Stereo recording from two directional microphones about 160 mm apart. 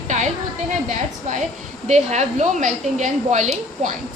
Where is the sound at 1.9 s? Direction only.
45° right (ahead or behind).